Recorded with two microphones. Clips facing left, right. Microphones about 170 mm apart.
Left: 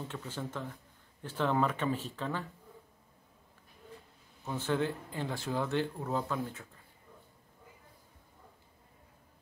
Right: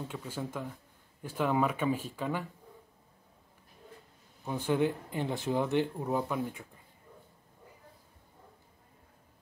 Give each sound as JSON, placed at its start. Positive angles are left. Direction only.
{"t": 0.1, "sound": "speech", "side_deg": -10}
{"t": 4.5, "sound": "speech", "side_deg": -15}